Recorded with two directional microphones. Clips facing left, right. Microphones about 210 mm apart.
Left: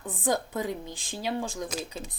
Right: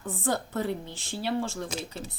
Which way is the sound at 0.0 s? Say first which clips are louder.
Left 1 dB; 15° left (ahead or behind).